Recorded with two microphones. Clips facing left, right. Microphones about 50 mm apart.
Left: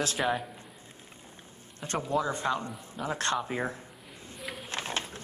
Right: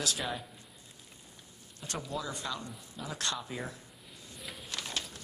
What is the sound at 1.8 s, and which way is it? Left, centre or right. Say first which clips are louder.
A man's voice: left 8 dB; left.